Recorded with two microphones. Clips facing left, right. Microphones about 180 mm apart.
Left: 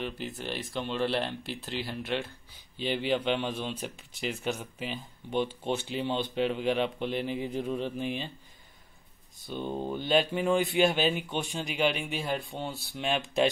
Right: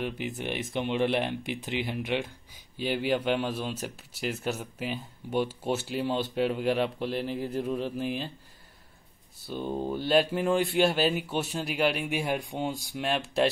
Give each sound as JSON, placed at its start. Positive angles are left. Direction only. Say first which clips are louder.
{"t": 0.4, "sound": "speech", "louder": "right 3 dB", "side_deg": -15}
{"t": 9.5, "sound": "speech", "louder": "right 2 dB", "side_deg": -5}